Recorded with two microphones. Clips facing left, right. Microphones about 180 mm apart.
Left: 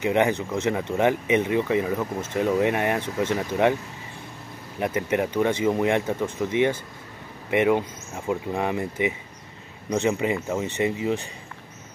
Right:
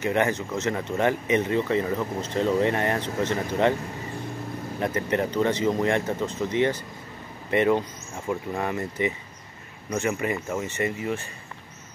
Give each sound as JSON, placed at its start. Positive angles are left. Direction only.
{"t": 0.0, "sound": "speech", "side_deg": 15}
{"t": 4.7, "sound": "speech", "side_deg": 15}